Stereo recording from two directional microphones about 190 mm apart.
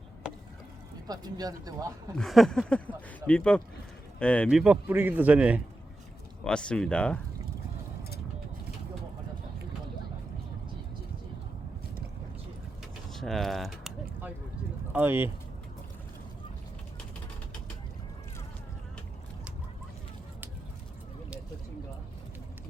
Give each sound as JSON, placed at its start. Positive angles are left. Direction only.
{"t": 1.0, "sound": "speech", "side_deg": -20}
{"t": 2.1, "sound": "speech", "side_deg": 0}
{"t": 4.4, "sound": "speech", "side_deg": -5}
{"t": 6.4, "sound": "speech", "side_deg": 5}
{"t": 13.1, "sound": "a sound", "side_deg": 0}
{"t": 14.9, "sound": "speech", "side_deg": -10}